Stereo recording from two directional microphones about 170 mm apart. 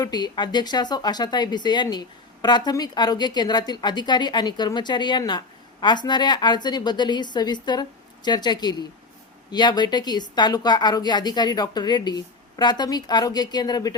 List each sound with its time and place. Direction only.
0.0 s speech: 25° left (ahead or behind)